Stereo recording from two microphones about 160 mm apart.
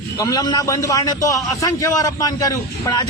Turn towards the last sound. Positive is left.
turn(degrees=25)  # may be behind; listen again after turning